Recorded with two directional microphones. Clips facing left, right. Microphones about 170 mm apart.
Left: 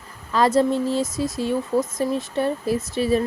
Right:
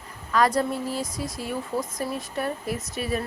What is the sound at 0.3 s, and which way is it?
Speech, 25° left (ahead or behind).